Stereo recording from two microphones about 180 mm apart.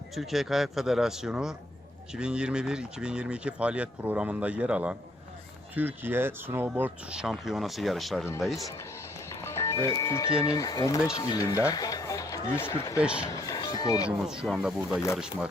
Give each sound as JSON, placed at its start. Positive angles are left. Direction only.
{"t": 0.1, "sound": "speech", "side_deg": 0}
{"t": 9.4, "sound": "speech", "side_deg": 15}
{"t": 13.0, "sound": "speech", "side_deg": -5}
{"t": 13.2, "sound": "speech", "side_deg": 20}
{"t": 14.2, "sound": "speech", "side_deg": -5}